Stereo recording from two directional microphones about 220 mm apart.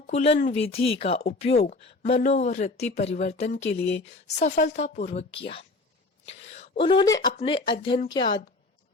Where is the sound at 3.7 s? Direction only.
50° left (ahead or behind).